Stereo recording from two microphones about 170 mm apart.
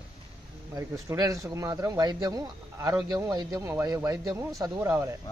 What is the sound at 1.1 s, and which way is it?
A man's voice, 20° right (ahead or behind).